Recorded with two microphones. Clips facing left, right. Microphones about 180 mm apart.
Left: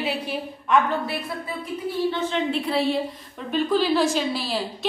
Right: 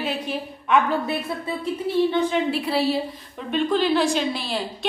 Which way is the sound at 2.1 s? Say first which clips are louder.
Right 3 dB; 5° right (ahead or behind).